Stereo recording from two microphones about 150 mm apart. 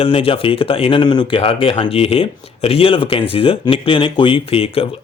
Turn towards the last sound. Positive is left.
turn(degrees=40)  # may be behind; listen again after turning